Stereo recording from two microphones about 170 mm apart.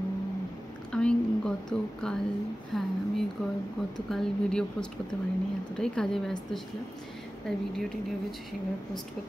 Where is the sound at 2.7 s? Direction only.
Centre (ahead or behind).